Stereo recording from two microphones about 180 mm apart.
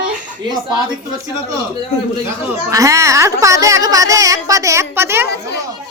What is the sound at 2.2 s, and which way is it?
Speech, 15° right (ahead or behind).